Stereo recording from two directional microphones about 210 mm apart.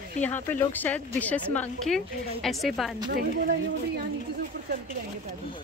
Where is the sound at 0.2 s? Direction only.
10° left (ahead or behind).